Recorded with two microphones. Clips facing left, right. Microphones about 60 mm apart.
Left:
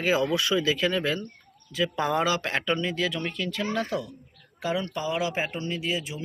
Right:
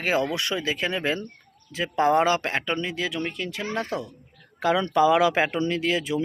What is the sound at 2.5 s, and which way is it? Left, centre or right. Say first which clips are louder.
Speech: even; centre.